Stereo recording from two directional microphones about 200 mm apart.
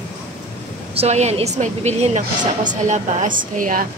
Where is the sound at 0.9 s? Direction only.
30° right (ahead or behind).